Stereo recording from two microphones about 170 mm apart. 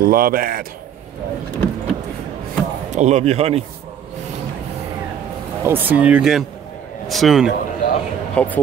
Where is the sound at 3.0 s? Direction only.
40° right (ahead or behind).